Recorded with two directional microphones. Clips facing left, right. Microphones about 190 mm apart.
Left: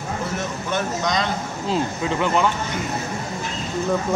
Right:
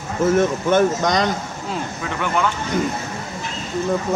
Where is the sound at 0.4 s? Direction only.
50° right (ahead or behind).